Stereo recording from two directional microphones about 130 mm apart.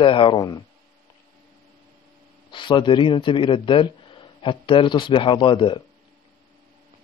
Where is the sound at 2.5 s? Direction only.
40° left (ahead or behind).